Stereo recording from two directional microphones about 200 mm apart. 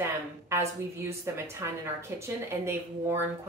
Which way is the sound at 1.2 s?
15° right (ahead or behind).